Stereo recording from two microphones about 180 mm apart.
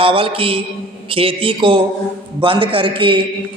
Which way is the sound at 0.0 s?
30° right (ahead or behind).